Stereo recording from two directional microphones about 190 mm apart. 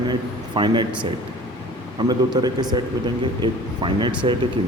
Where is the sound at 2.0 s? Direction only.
20° right (ahead or behind).